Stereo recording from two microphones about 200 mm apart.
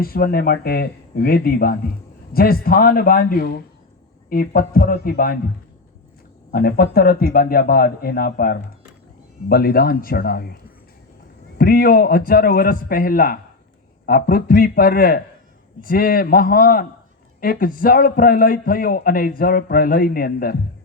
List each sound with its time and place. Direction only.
0.0 s a man's voice: 50° left (ahead or behind)
6.5 s a man's voice: 50° left (ahead or behind)